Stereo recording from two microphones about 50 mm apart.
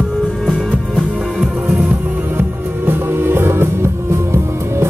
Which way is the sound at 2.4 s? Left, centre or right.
Right.